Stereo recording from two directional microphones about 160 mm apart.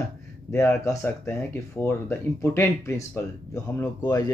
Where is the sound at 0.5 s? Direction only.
15° left (ahead or behind).